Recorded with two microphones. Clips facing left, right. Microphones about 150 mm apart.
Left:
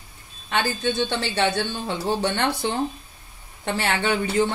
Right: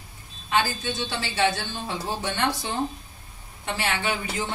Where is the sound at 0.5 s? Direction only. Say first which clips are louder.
Left 2 dB; 60° left (ahead or behind).